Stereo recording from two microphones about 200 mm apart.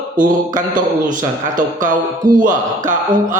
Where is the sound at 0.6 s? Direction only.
40° right (ahead or behind).